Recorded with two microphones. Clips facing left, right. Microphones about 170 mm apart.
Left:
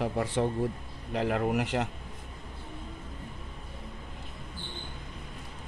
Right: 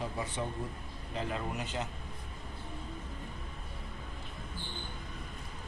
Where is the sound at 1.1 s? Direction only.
70° left (ahead or behind).